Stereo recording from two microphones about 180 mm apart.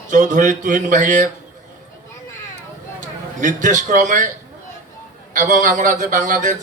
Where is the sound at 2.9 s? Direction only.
45° right (ahead or behind).